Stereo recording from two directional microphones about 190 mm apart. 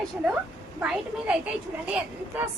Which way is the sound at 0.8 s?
5° right (ahead or behind).